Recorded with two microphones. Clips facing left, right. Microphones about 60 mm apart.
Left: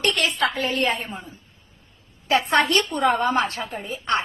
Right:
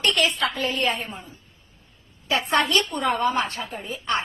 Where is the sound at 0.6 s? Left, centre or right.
Left.